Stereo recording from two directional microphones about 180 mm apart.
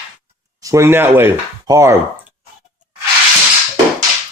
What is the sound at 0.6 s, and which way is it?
Speech, 15° right (ahead or behind).